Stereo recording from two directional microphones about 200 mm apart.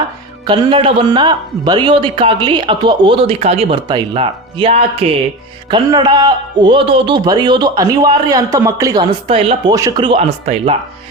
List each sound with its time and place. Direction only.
0.4 s speech: 25° right (ahead or behind)
9.2 s speech: 30° right (ahead or behind)
9.7 s speech: 20° right (ahead or behind)